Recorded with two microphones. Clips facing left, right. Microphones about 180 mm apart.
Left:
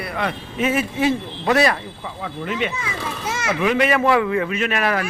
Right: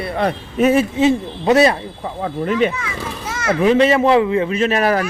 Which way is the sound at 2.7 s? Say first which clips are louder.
Right 1 dB; 25° left (ahead or behind).